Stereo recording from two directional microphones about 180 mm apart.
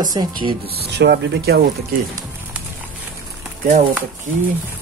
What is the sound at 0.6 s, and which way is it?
Speech, 60° right (ahead or behind).